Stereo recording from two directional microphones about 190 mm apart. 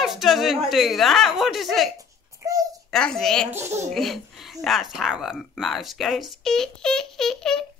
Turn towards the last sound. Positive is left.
turn(degrees=0)  # may be behind; listen again after turning